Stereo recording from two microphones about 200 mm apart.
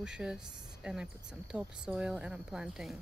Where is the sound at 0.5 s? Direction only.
20° right (ahead or behind).